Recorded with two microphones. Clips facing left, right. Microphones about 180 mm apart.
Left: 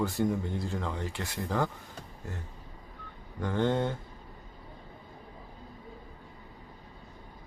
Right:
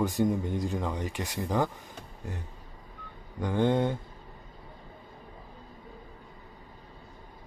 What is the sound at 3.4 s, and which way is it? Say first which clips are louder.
Speech: right 3 dB; 15° right (ahead or behind).